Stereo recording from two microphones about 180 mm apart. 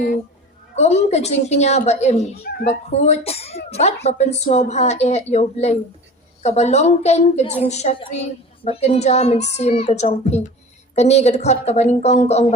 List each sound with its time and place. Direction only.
0.8 s a woman's voice: 35° left (ahead or behind)
2.4 s speech: 60° left (ahead or behind)
2.6 s a woman's voice: 40° left (ahead or behind)